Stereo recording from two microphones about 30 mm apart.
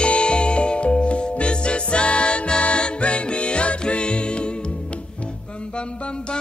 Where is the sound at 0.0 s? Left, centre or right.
Left.